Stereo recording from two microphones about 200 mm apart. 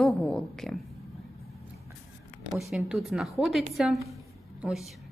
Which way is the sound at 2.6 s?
Centre (ahead or behind).